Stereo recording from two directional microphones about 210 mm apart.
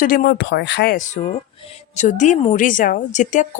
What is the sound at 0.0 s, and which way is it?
A woman's voice, 40° left (ahead or behind).